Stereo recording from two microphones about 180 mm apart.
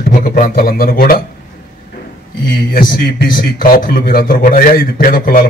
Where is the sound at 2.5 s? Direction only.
50° left (ahead or behind).